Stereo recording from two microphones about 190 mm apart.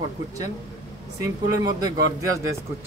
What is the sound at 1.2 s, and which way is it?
Speech, 20° right (ahead or behind).